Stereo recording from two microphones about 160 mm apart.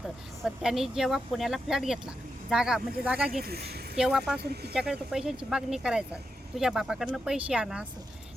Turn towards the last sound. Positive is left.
turn(degrees=-5)  # may be behind; listen again after turning